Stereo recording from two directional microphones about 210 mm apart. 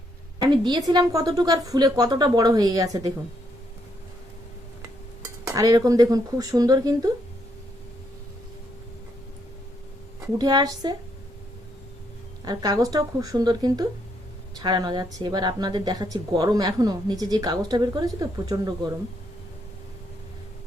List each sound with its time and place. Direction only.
0.3 s speech: 20° right (ahead or behind)
5.5 s speech: 15° right (ahead or behind)
10.3 s speech: 20° right (ahead or behind)
12.5 s speech: 15° right (ahead or behind)